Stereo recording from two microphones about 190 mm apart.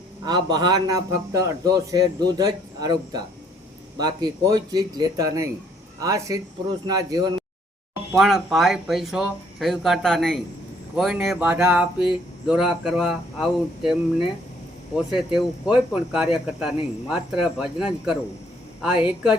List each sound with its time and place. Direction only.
0.3 s speech: 20° right (ahead or behind)
8.1 s speech: centre (ahead or behind)